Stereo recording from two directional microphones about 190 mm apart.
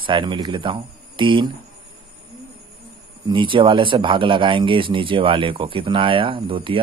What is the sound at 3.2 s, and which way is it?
Speech, 25° right (ahead or behind).